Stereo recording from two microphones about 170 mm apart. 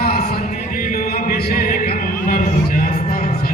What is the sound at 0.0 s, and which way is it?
Music, 60° left (ahead or behind).